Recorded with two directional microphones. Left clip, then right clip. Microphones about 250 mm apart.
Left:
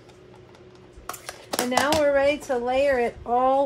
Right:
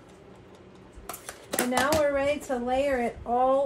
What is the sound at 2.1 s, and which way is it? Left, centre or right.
Speech, left.